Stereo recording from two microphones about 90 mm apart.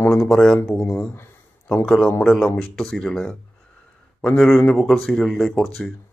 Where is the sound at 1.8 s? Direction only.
10° left (ahead or behind).